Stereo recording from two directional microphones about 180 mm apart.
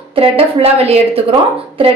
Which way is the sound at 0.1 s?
35° right (ahead or behind).